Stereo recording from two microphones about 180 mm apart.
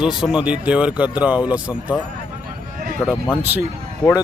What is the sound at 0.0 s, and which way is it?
Speech, 5° right (ahead or behind).